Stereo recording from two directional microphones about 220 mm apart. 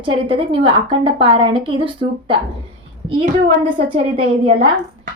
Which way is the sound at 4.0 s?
25° right (ahead or behind).